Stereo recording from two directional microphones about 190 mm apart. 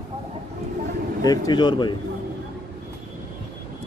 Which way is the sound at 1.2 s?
20° left (ahead or behind).